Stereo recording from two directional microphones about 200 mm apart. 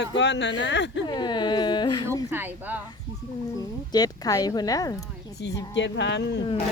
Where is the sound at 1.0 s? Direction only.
20° left (ahead or behind).